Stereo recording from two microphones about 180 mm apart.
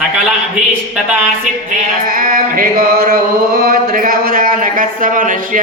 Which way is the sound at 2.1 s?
50° right (ahead or behind).